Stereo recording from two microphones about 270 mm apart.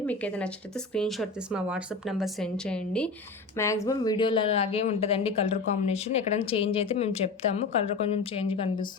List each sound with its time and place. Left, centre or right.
0.0 s speech: centre; by 8.9 s left